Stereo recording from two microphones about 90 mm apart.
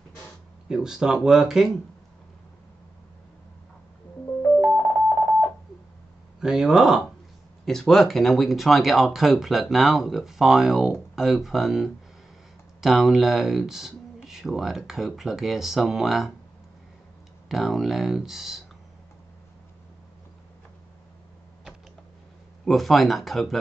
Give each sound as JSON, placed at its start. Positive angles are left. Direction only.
{"t": 0.7, "sound": "speech", "side_deg": -5}
{"t": 4.7, "sound": "music", "side_deg": -25}
{"t": 6.4, "sound": "speech", "side_deg": -10}
{"t": 7.6, "sound": "speech", "side_deg": 5}
{"t": 17.5, "sound": "speech", "side_deg": 0}
{"t": 22.7, "sound": "speech", "side_deg": 0}